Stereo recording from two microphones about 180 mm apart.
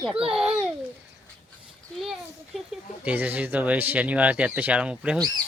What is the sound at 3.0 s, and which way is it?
Speech, 10° right (ahead or behind).